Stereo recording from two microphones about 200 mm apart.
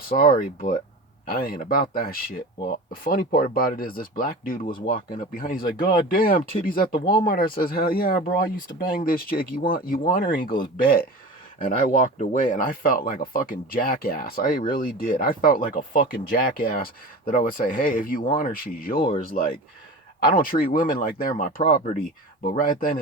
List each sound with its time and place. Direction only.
0.0 s speech: 45° left (ahead or behind)
20.1 s speech: 45° left (ahead or behind)